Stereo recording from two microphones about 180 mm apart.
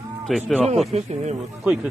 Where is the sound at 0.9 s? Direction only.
35° right (ahead or behind).